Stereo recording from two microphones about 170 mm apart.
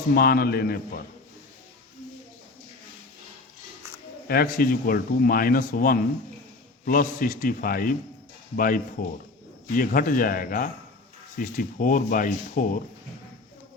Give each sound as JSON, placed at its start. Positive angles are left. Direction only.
{"t": 0.1, "sound": "speech", "side_deg": 65}
{"t": 4.3, "sound": "speech", "side_deg": 60}